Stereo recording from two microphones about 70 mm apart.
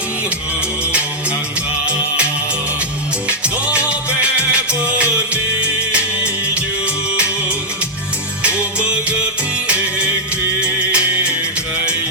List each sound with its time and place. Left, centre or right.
3.2 s music: centre
10.6 s music: centre